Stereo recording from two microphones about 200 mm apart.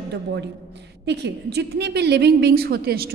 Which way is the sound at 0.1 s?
60° right (ahead or behind).